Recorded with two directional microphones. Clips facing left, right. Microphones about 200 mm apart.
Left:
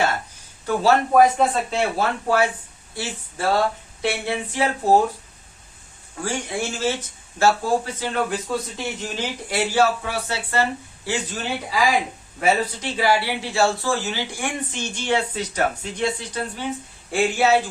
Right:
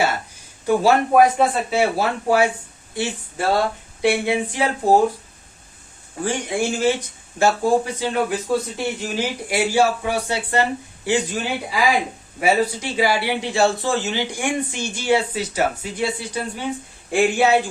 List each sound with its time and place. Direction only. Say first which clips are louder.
0.7 s speech: right 2 dB; 10° right (ahead or behind)
6.2 s speech: right 4 dB; 15° right (ahead or behind)